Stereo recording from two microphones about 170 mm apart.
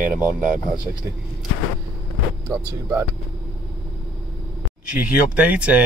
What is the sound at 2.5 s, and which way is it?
Speech, 15° right (ahead or behind).